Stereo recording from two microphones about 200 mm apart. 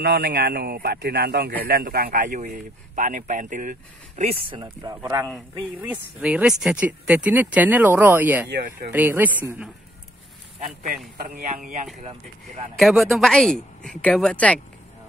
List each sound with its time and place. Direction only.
0.0 s a man's voice: 55° right (ahead or behind)
4.2 s speech: 25° right (ahead or behind); by 8.5 s 10° right (ahead or behind)
8.5 s a man's voice: 55° right (ahead or behind)
8.9 s speech: 10° right (ahead or behind)
11.2 s a man's voice: 40° right (ahead or behind)
12.7 s speech: centre (ahead or behind)